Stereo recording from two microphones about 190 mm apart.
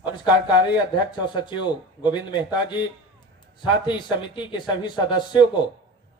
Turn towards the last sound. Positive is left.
turn(degrees=25)  # may be behind; listen again after turning